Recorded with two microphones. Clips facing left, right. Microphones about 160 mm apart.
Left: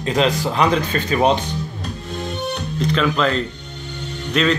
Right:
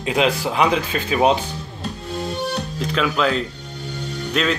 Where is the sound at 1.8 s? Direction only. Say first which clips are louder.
Right 1 dB; 30° right (ahead or behind).